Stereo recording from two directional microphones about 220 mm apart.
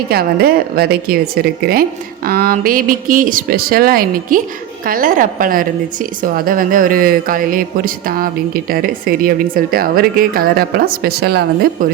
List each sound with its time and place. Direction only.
0.1 s a woman's voice: 45° right (ahead or behind)